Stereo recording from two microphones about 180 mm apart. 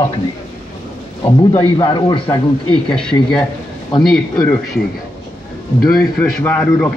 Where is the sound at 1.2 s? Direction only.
25° left (ahead or behind).